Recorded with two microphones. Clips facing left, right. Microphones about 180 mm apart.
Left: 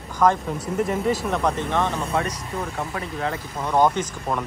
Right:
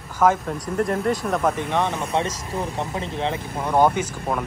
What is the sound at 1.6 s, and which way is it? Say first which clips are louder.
Speech: even; 15° right (ahead or behind).